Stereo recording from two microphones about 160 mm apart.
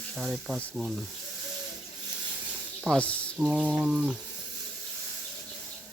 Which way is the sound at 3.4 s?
10° right (ahead or behind).